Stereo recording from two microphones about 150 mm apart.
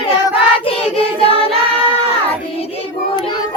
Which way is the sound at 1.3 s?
40° right (ahead or behind).